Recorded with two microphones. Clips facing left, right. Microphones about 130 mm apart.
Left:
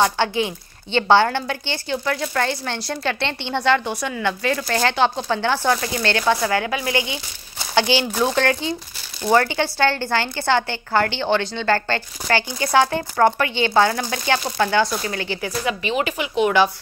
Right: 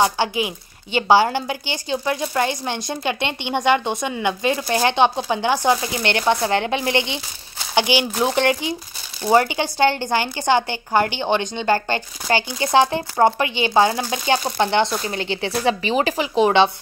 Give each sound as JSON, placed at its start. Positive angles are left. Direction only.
{"t": 0.0, "sound": "a woman's voice", "side_deg": -15}